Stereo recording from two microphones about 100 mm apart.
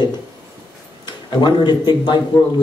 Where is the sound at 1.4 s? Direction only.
45° left (ahead or behind).